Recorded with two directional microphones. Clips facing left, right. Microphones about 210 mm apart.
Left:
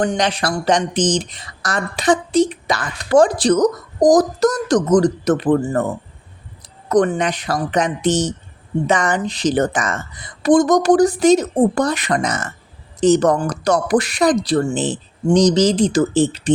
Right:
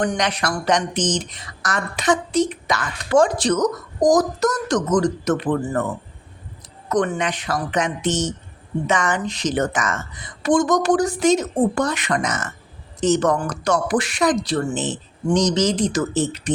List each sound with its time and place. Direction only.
0.0 s a woman's voice: 30° left (ahead or behind)
6.8 s a woman's voice: 35° left (ahead or behind)